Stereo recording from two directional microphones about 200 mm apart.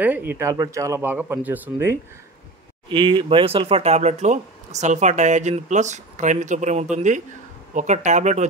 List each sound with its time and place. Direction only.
0.0 s speech: 10° right (ahead or behind)
2.9 s speech: 25° right (ahead or behind)